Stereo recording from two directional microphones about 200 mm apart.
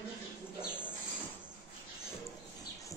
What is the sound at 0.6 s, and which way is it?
Bird, 10° left (ahead or behind).